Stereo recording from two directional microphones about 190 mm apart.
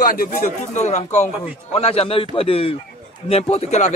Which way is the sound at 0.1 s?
45° left (ahead or behind).